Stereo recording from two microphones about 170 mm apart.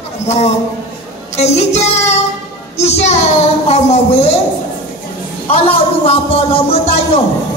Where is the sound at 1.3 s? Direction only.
40° left (ahead or behind).